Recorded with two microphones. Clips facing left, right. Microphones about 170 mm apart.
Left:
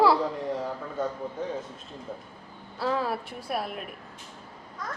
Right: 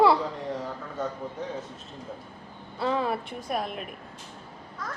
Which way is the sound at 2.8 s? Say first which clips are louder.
Right 1 dB; centre (ahead or behind).